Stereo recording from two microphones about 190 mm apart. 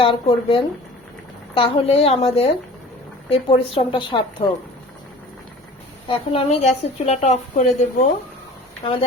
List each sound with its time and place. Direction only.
0.0 s a woman's voice: 30° left (ahead or behind)
6.1 s a woman's voice: 30° left (ahead or behind)
8.8 s speech: 25° left (ahead or behind)